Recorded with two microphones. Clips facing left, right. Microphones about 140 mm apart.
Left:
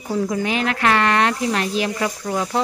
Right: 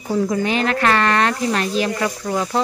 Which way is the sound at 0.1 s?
5° left (ahead or behind).